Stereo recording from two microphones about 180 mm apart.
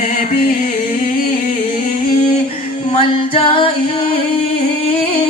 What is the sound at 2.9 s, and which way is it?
Music, 30° left (ahead or behind).